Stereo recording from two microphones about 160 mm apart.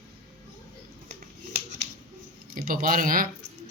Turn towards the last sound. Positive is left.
turn(degrees=-60)  # may be behind; listen again after turning